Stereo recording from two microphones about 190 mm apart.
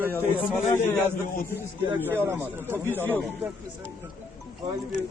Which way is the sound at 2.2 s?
10° right (ahead or behind).